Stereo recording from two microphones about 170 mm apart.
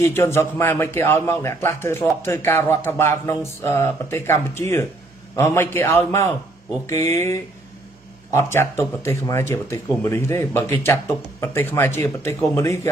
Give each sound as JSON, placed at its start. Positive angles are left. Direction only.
{"t": 0.0, "sound": "a man's voice", "side_deg": 15}